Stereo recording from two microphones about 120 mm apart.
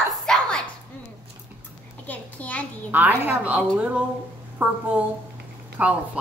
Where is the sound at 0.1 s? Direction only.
5° left (ahead or behind).